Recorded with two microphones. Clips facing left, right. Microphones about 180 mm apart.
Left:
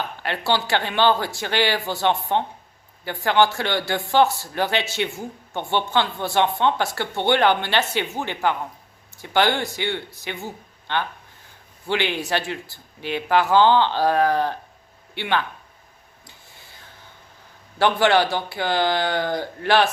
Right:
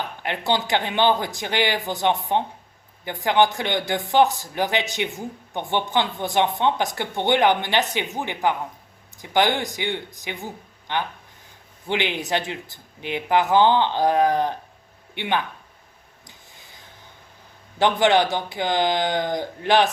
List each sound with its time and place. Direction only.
0.2 s speech: 20° right (ahead or behind)
16.2 s a sound: 15° right (ahead or behind)
17.7 s speech: 20° right (ahead or behind)